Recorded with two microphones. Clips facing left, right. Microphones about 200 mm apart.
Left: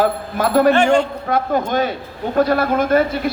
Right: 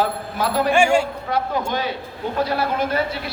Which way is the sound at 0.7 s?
10° right (ahead or behind).